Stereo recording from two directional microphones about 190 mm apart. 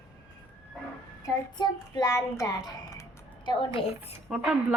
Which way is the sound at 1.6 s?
20° left (ahead or behind).